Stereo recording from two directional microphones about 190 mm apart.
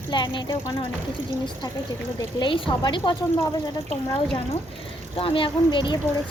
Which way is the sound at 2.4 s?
25° left (ahead or behind).